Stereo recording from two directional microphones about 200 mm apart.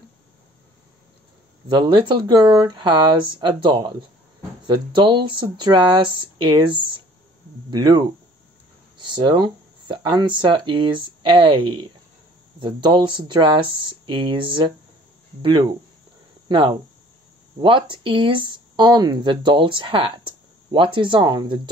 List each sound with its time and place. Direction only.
1.7 s speech: 25° right (ahead or behind)
16.4 s speech: 25° right (ahead or behind)